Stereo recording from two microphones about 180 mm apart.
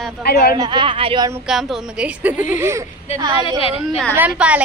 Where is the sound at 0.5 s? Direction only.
25° right (ahead or behind).